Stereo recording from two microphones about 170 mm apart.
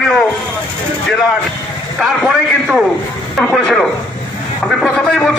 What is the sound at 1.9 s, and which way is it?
A man's voice, centre (ahead or behind).